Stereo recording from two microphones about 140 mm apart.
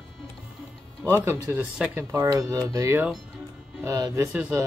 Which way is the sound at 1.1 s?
20° right (ahead or behind).